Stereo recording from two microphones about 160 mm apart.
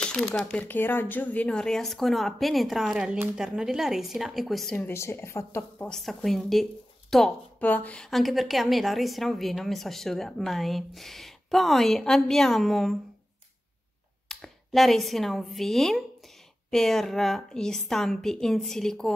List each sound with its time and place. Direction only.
0.0 s a woman's voice: 5° left (ahead or behind)
4.7 s a woman's voice: 15° left (ahead or behind)
5.9 s a woman's voice: centre (ahead or behind)
14.3 s a woman's voice: centre (ahead or behind)